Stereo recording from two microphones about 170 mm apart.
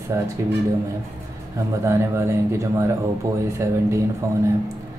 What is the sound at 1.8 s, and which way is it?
Speech, 15° right (ahead or behind).